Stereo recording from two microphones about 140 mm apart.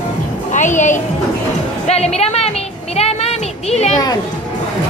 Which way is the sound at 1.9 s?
50° left (ahead or behind).